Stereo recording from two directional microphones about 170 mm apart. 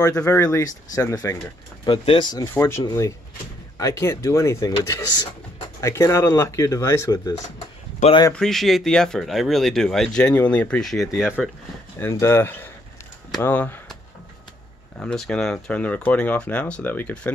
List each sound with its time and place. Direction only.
0.0 s speech: 15° left (ahead or behind)
1.9 s speech: 30° left (ahead or behind)
2.5 s speech: 15° left (ahead or behind)
8.3 s speech: 5° left (ahead or behind)
12.0 s speech: 15° left (ahead or behind)
15.0 s speech: 5° left (ahead or behind)